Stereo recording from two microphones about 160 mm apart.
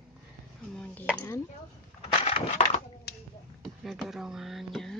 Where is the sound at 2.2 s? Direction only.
40° left (ahead or behind).